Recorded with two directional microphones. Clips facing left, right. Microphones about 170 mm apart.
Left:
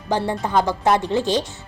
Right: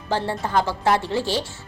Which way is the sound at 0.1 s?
15° left (ahead or behind).